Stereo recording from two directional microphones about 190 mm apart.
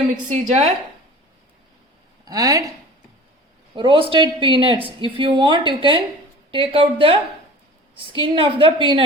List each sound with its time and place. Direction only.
0.3 s a woman's voice: 35° right (ahead or behind)
2.2 s speech: 20° right (ahead or behind)
3.8 s speech: 25° right (ahead or behind)